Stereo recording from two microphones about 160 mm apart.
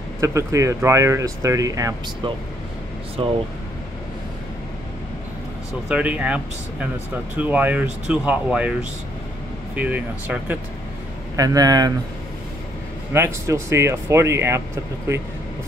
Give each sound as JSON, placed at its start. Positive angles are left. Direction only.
{"t": 0.2, "sound": "speech", "side_deg": -20}
{"t": 3.2, "sound": "speech", "side_deg": -35}
{"t": 5.9, "sound": "speech", "side_deg": -10}
{"t": 9.8, "sound": "speech", "side_deg": -10}
{"t": 11.3, "sound": "speech", "side_deg": -20}
{"t": 13.1, "sound": "speech", "side_deg": -15}